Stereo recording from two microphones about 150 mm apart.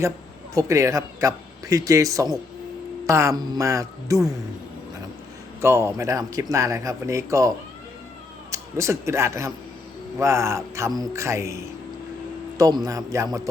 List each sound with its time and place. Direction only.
0.5 s speech: 20° right (ahead or behind)
5.5 s speech: 15° right (ahead or behind)